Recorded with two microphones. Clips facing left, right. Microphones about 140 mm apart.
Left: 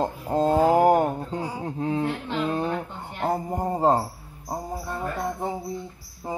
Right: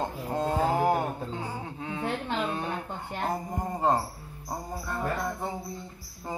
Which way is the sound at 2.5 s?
35° left (ahead or behind).